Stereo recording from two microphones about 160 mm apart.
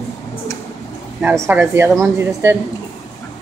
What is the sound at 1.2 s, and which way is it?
Speech, 10° right (ahead or behind).